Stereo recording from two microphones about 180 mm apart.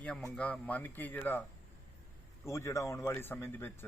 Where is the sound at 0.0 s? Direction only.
5° left (ahead or behind).